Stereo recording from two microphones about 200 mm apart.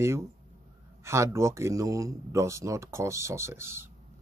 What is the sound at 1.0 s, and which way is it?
Speech, 15° right (ahead or behind).